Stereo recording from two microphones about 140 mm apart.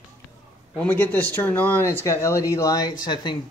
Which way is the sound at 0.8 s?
15° left (ahead or behind).